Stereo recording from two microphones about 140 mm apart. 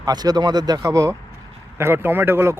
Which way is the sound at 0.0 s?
30° right (ahead or behind).